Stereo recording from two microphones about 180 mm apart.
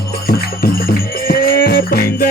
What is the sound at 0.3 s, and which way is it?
Music, 55° left (ahead or behind).